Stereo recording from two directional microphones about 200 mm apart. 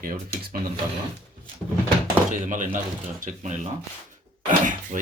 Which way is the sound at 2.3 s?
40° right (ahead or behind).